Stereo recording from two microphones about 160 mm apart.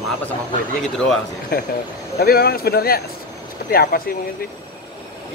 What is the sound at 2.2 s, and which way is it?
Speech, 70° left (ahead or behind).